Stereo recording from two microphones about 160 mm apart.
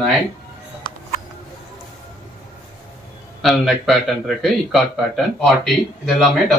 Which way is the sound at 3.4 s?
Centre (ahead or behind).